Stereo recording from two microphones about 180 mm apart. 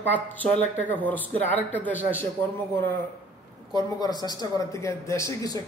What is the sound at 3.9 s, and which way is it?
Speech, 20° left (ahead or behind).